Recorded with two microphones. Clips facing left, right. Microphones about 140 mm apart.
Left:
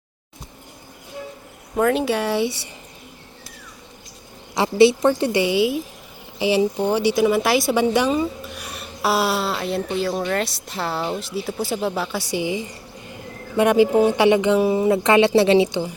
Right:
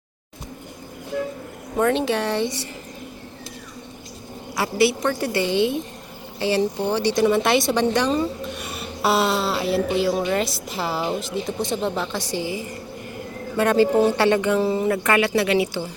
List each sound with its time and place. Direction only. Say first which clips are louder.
1.7 s speech: left 1 dB; 5° left (ahead or behind)
4.5 s a woman's voice: left 5 dB; 20° left (ahead or behind)